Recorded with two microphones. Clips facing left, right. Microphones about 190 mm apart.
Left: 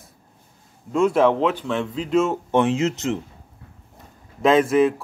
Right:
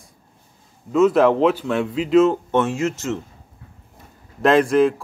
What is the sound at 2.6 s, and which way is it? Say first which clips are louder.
Speech: left 4 dB; 20° left (ahead or behind).